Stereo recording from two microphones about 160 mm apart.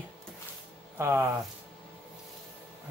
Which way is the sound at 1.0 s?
15° right (ahead or behind).